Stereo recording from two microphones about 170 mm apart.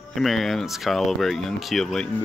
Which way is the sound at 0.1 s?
Centre (ahead or behind).